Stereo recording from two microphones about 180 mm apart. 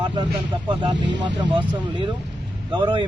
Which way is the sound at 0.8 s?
25° right (ahead or behind).